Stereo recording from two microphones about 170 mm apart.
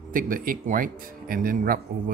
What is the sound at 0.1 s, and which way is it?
Speech, 55° right (ahead or behind).